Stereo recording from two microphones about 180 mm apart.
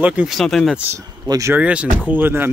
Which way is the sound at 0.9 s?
15° right (ahead or behind).